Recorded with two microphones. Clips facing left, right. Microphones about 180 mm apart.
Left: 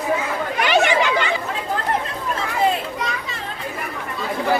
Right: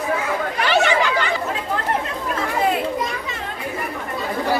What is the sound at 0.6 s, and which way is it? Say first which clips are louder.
Chatter: left 1 dB; 15° left (ahead or behind).